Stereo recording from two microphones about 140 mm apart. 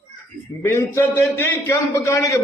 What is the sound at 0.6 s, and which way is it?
A man's voice, 20° left (ahead or behind).